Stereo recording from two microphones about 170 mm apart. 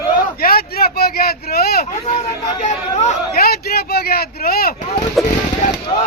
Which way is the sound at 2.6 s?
40° left (ahead or behind).